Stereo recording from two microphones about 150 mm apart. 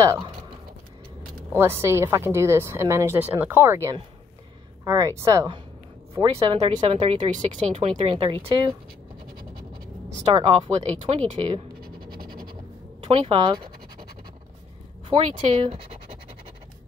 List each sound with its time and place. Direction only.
1.5 s a woman's voice: 15° right (ahead or behind); by 7.6 s 55° right (ahead or behind)
7.7 s speech: 40° right (ahead or behind)
10.0 s a woman's voice: 40° right (ahead or behind)
13.0 s speech: 40° right (ahead or behind)
15.0 s speech: 40° right (ahead or behind)